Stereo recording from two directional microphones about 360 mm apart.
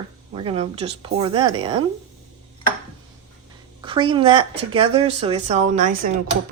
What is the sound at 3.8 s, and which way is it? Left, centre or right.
Speech, centre.